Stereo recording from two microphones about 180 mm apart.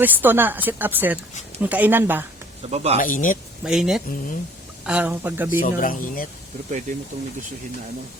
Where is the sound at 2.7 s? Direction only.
35° right (ahead or behind).